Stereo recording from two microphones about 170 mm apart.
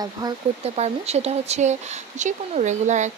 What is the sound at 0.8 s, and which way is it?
Speech, 40° right (ahead or behind).